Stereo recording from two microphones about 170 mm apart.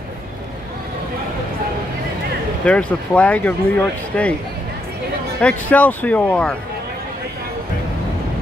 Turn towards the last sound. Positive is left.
turn(degrees=5)  # may be behind; listen again after turning